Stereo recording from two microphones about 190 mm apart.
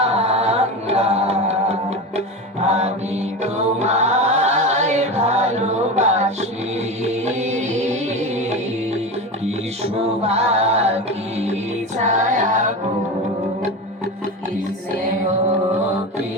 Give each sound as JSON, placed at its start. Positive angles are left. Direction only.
{"t": 0.0, "sound": "music", "side_deg": -35}